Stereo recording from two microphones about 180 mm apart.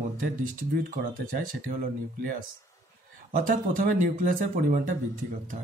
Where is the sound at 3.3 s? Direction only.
45° right (ahead or behind).